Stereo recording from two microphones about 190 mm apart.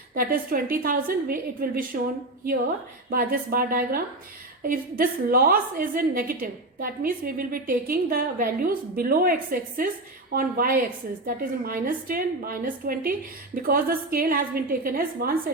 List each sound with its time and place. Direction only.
0.2 s a woman's voice: 50° right (ahead or behind)
3.1 s a woman's voice: 50° right (ahead or behind)